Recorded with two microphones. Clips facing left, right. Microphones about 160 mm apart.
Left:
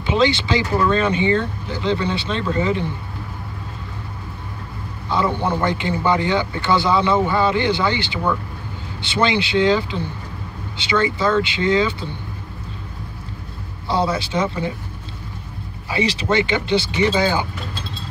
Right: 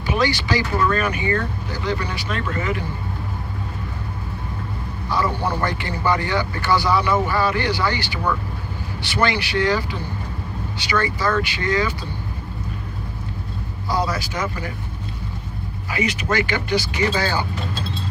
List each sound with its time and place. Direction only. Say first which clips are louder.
0.0 s speech: left 3 dB; 25° left (ahead or behind)
5.1 s speech: left 2 dB; 20° left (ahead or behind)
13.8 s speech: left 3 dB; 25° left (ahead or behind)
15.9 s speech: left 3 dB; 30° left (ahead or behind)